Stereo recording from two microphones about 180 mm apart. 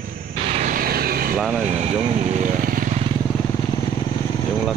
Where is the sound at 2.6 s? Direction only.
50° right (ahead or behind).